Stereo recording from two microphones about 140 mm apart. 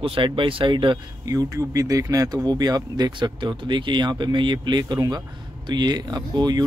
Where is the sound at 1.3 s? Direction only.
25° right (ahead or behind).